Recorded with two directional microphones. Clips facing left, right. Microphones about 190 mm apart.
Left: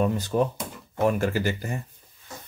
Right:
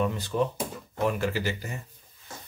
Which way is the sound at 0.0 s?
45° left (ahead or behind).